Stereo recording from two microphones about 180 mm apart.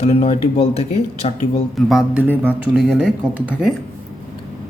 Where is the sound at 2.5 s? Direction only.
Centre (ahead or behind).